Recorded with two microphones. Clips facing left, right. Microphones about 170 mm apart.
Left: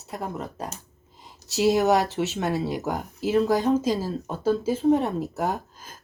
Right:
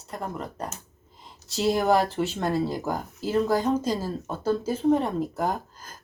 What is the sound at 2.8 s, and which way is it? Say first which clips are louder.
Speech: left 1 dB; 20° left (ahead or behind).